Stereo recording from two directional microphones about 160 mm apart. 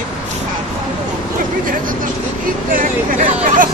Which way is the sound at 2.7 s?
60° right (ahead or behind).